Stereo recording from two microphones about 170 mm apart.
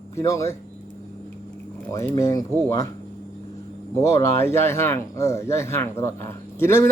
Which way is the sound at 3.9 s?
15° left (ahead or behind).